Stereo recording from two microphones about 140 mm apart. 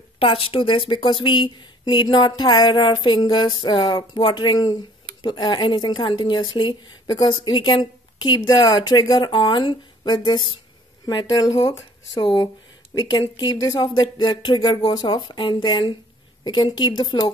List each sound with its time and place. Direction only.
0.2 s a woman's voice: 40° left (ahead or behind)